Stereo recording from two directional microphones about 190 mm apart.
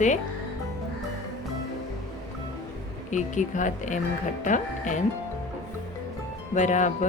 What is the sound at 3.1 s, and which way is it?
Speech, 40° left (ahead or behind).